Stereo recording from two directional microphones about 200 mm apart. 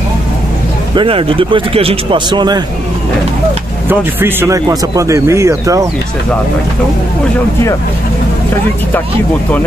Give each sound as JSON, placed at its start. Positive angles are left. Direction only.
{"t": 0.9, "sound": "speech", "side_deg": -25}
{"t": 3.9, "sound": "speech", "side_deg": -10}